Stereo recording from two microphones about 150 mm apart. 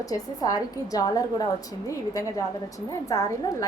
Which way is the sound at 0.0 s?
25° left (ahead or behind).